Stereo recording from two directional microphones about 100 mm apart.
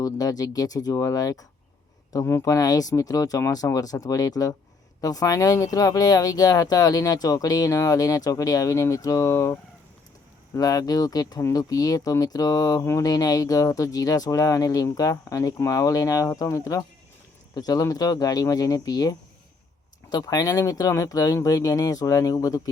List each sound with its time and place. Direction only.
0.0 s speech: 35° left (ahead or behind)
12.8 s speech: 25° left (ahead or behind)
13.1 s speech: 35° left (ahead or behind)